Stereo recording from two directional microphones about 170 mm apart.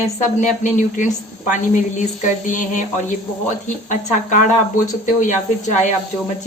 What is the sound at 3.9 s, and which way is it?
Speech, 50° left (ahead or behind).